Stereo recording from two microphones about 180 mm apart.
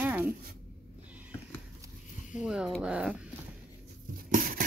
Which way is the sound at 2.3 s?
5° right (ahead or behind).